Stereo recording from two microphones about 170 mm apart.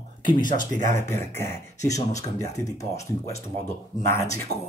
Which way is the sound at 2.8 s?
40° left (ahead or behind).